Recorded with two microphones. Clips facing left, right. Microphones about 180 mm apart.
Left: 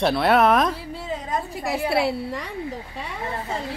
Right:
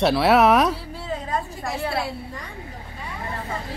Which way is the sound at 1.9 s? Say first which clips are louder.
Left 6 dB; 75° left (ahead or behind).